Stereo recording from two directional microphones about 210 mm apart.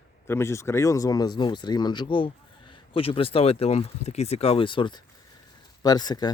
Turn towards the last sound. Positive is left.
turn(degrees=20)  # may be behind; listen again after turning